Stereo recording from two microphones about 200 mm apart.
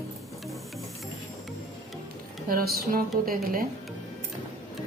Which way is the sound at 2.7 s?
45° right (ahead or behind).